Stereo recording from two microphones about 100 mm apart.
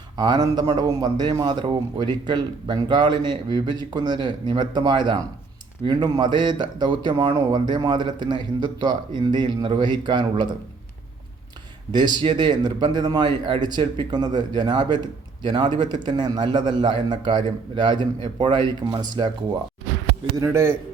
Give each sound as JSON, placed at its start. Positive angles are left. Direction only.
{"t": 0.2, "sound": "speech", "side_deg": -45}
{"t": 11.9, "sound": "speech", "side_deg": -45}
{"t": 20.3, "sound": "a man's voice", "side_deg": -30}